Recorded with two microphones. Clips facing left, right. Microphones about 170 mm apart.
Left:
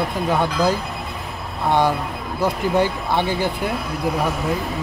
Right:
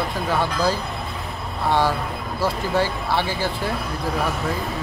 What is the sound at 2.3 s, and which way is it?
Speech, 20° left (ahead or behind).